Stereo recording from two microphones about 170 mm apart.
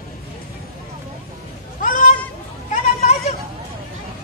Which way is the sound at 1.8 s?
50° left (ahead or behind).